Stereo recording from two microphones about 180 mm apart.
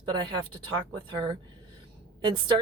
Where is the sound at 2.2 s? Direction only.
25° right (ahead or behind).